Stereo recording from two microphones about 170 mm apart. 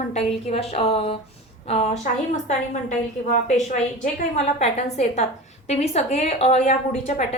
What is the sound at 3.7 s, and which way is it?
A woman's voice, 40° left (ahead or behind).